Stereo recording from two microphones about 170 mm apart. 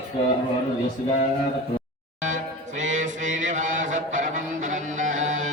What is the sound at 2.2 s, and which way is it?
Chant, 45° right (ahead or behind).